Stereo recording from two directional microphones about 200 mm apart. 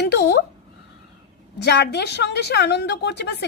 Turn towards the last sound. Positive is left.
turn(degrees=60)  # may be behind; listen again after turning